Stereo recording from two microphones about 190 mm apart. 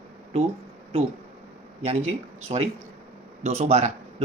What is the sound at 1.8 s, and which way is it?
Speech, 35° right (ahead or behind).